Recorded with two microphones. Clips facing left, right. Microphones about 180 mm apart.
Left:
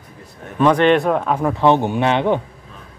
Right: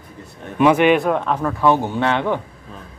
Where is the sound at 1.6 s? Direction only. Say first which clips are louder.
Left 2 dB; 20° left (ahead or behind).